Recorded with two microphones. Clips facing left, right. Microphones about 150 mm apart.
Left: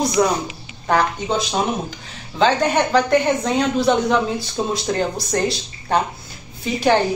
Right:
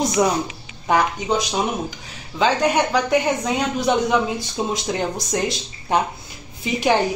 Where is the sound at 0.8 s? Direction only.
10° right (ahead or behind).